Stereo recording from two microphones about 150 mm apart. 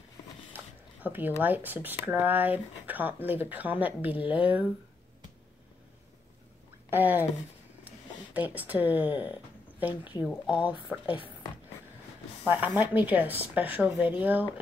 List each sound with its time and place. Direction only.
1.0 s speech: 10° right (ahead or behind)
6.9 s speech: 10° right (ahead or behind)
11.1 s speech: 35° left (ahead or behind)
12.4 s speech: 10° right (ahead or behind)